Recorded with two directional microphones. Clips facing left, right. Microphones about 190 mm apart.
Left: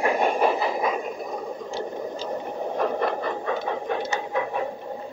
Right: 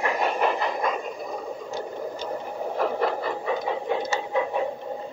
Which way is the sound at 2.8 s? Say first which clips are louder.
Even; 5° right (ahead or behind).